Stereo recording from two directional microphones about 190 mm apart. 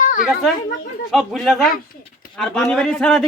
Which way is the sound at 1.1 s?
Centre (ahead or behind).